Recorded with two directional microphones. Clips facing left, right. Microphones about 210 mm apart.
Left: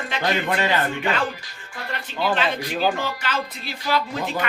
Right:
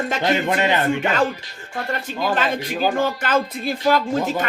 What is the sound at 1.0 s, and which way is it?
Speech, 45° right (ahead or behind).